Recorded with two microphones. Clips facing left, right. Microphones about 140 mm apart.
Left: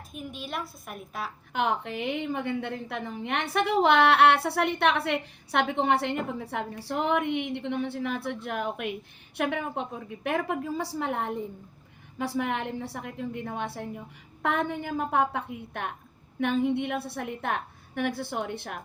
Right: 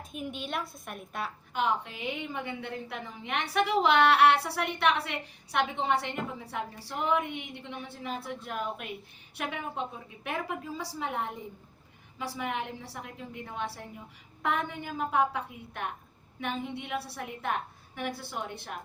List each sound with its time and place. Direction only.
0.1 s a woman's voice: centre (ahead or behind)
1.5 s a woman's voice: 60° left (ahead or behind)